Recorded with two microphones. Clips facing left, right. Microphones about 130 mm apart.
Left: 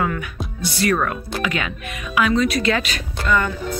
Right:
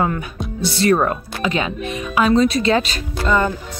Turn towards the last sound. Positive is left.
turn(degrees=-30)  # may be behind; listen again after turning